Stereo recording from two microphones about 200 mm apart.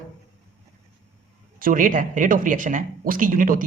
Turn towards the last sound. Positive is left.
turn(degrees=-40)  # may be behind; listen again after turning